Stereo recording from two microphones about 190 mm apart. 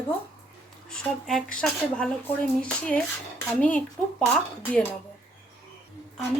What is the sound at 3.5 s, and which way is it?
Speech, 5° left (ahead or behind).